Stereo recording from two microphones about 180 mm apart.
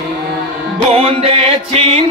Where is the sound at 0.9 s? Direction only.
30° right (ahead or behind).